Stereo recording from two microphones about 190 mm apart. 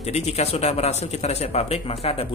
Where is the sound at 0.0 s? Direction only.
35° left (ahead or behind).